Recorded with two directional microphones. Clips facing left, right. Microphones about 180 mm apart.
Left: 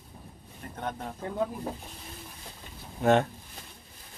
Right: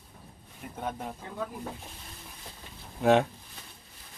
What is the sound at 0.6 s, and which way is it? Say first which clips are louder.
Speech: even; 5° right (ahead or behind).